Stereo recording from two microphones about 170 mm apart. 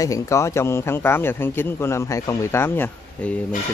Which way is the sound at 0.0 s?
20° left (ahead or behind).